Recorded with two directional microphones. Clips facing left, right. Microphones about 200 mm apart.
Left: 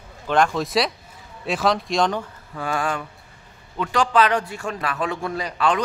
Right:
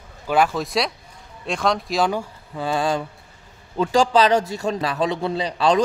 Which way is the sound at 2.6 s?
30° right (ahead or behind).